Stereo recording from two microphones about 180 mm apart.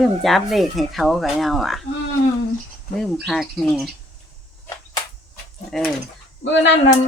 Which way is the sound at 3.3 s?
Centre (ahead or behind).